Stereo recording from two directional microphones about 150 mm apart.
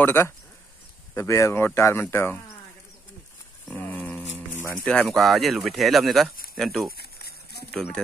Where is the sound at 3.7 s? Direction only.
10° left (ahead or behind).